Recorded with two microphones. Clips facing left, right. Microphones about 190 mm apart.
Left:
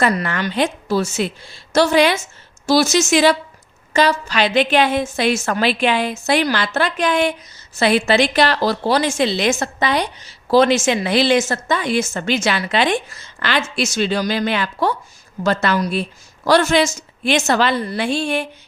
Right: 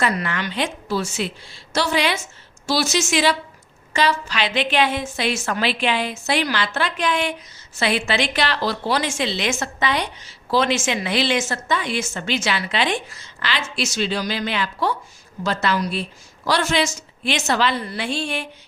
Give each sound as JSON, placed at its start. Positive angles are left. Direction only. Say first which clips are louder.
{"t": 0.0, "sound": "a woman's voice", "louder": "left 4 dB", "side_deg": 45}